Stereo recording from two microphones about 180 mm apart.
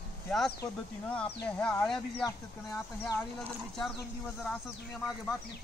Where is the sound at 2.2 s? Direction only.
15° left (ahead or behind).